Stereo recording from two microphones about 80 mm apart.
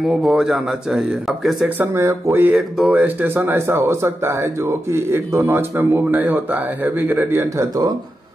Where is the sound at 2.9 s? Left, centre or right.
Right.